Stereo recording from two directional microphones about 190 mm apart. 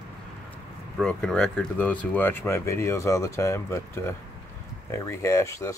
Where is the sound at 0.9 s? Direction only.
5° left (ahead or behind).